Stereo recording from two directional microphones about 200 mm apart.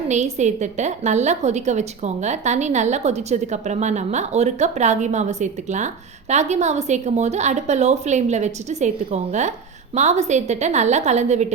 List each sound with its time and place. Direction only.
0.1 s a woman's voice: 35° right (ahead or behind)